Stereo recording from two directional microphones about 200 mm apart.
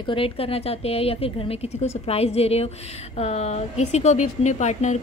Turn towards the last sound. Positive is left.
turn(degrees=35)  # may be behind; listen again after turning